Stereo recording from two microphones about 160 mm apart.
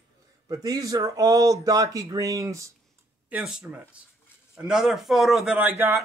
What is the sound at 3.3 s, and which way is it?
Speech, 5° right (ahead or behind).